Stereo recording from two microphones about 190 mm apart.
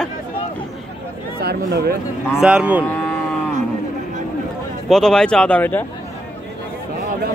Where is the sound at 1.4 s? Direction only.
55° right (ahead or behind).